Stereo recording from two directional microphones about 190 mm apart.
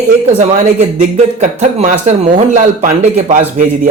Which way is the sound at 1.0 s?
40° right (ahead or behind).